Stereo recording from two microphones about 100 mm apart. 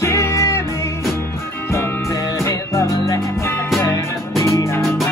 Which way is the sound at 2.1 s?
30° left (ahead or behind).